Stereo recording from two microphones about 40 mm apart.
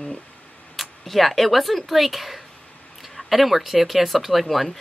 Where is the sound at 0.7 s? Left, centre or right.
Centre.